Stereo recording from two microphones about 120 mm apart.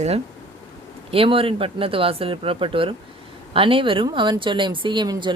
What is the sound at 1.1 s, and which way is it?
A woman's voice, 50° right (ahead or behind).